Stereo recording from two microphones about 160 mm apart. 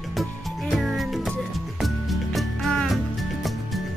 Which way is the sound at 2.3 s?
Centre (ahead or behind).